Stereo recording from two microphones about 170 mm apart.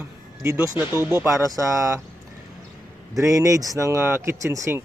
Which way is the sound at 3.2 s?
20° right (ahead or behind).